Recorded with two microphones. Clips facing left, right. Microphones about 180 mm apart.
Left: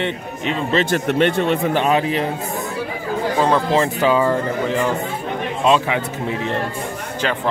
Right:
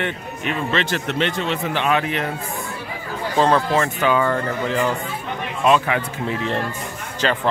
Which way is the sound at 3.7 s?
25° left (ahead or behind).